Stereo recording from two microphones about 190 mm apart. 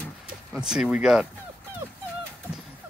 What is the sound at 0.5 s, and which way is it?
Speech, 5° right (ahead or behind).